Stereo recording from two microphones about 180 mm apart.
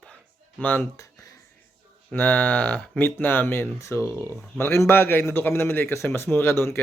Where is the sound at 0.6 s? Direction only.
10° left (ahead or behind).